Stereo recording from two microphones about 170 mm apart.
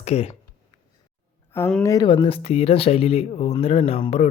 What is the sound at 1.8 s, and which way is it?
Speech, 20° left (ahead or behind).